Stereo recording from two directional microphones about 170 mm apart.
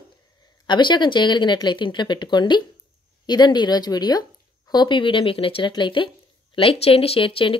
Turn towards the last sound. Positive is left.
turn(degrees=30)  # may be behind; listen again after turning